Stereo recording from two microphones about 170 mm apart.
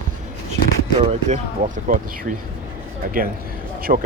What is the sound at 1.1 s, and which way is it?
A man's voice, 40° right (ahead or behind).